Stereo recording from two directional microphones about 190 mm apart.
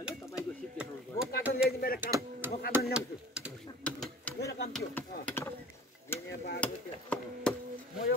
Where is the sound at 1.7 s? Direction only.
55° left (ahead or behind).